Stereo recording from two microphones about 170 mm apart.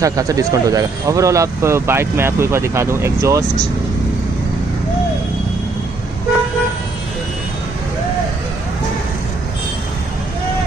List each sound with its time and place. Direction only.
0.0 s speech: 20° right (ahead or behind)